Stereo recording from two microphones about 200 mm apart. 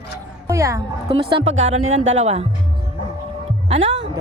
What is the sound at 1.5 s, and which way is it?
Speech, 75° right (ahead or behind).